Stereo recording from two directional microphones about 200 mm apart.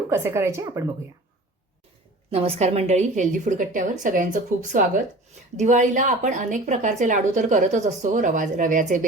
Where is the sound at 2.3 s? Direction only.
30° right (ahead or behind).